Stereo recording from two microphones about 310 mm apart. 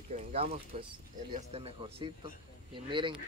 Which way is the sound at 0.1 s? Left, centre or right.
Centre.